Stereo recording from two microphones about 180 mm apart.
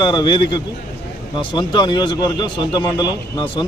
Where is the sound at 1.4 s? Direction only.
25° left (ahead or behind).